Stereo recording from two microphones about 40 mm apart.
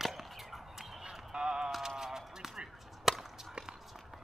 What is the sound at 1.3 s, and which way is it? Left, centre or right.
Music, centre.